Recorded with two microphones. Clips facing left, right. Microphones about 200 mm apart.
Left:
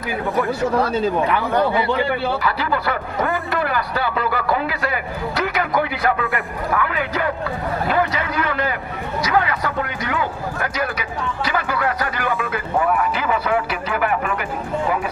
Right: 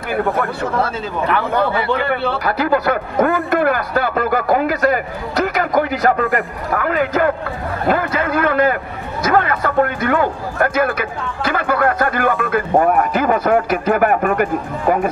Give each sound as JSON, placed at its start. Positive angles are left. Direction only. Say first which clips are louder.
{"t": 0.1, "sound": "speech", "louder": "right 3 dB", "side_deg": -60}
{"t": 2.0, "sound": "a man's voice", "louder": "right 2 dB", "side_deg": -45}